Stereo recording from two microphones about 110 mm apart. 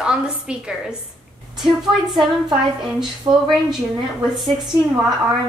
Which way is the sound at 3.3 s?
40° right (ahead or behind).